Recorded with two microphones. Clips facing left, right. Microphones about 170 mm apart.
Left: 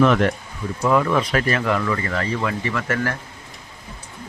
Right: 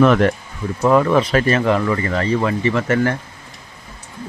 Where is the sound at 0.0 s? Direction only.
40° right (ahead or behind); by 3.2 s 25° right (ahead or behind).